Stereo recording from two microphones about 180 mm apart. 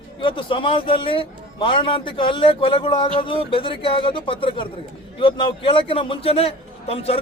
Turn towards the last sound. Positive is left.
turn(degrees=35)  # may be behind; listen again after turning